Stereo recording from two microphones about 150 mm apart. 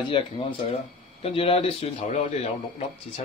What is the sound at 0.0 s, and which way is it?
Speech, 35° left (ahead or behind).